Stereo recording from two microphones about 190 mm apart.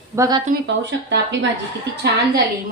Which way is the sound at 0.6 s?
70° right (ahead or behind).